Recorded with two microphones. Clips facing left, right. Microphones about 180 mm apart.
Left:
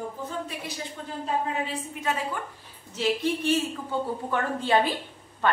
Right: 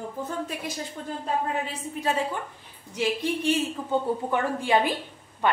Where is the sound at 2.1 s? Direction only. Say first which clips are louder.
Right 3 dB; 30° right (ahead or behind).